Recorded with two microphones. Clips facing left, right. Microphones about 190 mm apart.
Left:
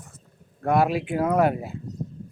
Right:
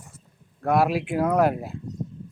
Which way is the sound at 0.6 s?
Centre (ahead or behind).